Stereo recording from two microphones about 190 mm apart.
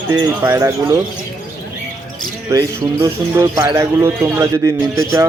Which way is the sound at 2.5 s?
15° right (ahead or behind).